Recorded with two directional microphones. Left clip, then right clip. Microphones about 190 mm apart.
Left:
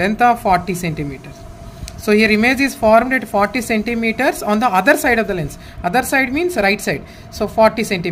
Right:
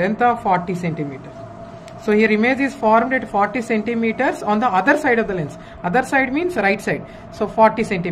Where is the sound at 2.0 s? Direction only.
90° left.